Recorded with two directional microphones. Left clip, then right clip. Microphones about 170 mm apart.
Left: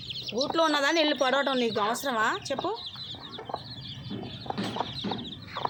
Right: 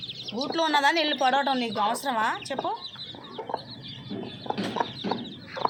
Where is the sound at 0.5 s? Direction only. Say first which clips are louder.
Right 2 dB; 30° left (ahead or behind).